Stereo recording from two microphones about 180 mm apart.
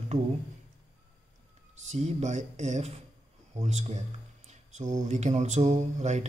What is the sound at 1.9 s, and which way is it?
Speech, 40° right (ahead or behind).